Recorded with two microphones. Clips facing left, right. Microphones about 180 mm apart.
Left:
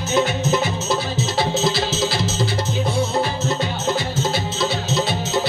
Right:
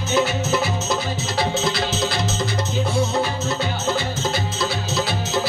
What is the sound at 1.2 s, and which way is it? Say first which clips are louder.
Music: left 2 dB; 25° left (ahead or behind).